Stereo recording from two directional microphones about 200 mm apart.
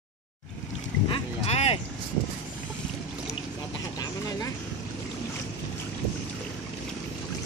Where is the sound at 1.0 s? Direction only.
30° left (ahead or behind).